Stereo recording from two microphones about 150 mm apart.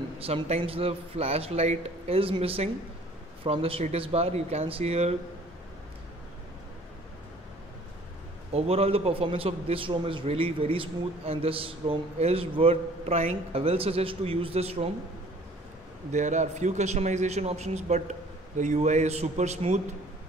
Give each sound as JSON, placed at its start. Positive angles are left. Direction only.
{"t": 0.2, "sound": "a man's voice", "side_deg": -40}
{"t": 8.5, "sound": "a man's voice", "side_deg": -40}
{"t": 16.1, "sound": "a man's voice", "side_deg": -55}